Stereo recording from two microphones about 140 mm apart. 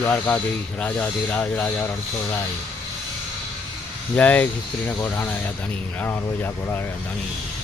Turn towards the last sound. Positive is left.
turn(degrees=15)  # may be behind; listen again after turning